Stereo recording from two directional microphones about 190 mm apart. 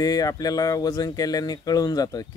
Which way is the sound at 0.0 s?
20° left (ahead or behind).